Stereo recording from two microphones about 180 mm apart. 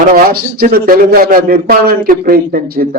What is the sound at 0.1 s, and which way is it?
A man's voice, 55° right (ahead or behind).